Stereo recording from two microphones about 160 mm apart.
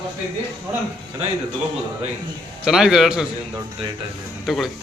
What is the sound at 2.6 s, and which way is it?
Speech, 5° right (ahead or behind).